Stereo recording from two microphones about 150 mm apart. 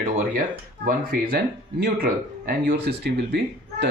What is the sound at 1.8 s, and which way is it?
Speech, 80° right.